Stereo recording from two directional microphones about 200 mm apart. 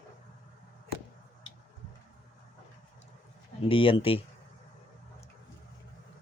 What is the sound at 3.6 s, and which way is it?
Speech, 25° left (ahead or behind).